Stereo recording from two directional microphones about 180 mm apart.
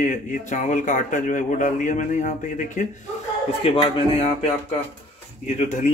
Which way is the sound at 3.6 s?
30° left (ahead or behind).